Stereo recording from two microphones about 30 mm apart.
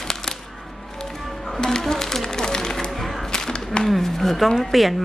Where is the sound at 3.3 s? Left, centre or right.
Left.